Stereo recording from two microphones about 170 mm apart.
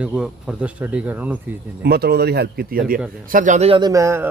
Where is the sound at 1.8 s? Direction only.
70° right (ahead or behind).